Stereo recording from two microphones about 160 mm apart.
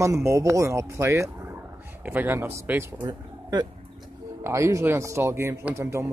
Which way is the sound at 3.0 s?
25° right (ahead or behind).